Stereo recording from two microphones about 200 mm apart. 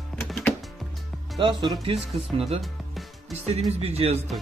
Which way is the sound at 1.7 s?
25° right (ahead or behind).